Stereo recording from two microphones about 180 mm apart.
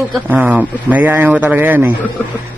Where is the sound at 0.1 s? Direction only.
10° right (ahead or behind).